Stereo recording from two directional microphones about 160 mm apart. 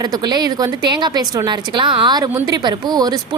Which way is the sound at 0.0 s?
25° right (ahead or behind).